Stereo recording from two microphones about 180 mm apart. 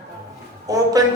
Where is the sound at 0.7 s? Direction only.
20° right (ahead or behind).